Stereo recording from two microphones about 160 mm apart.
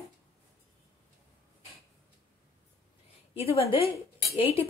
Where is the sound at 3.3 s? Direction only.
40° left (ahead or behind).